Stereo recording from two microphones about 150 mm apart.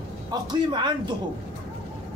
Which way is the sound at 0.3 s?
30° right (ahead or behind).